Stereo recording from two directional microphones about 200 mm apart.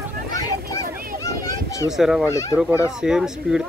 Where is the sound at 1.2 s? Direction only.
15° left (ahead or behind).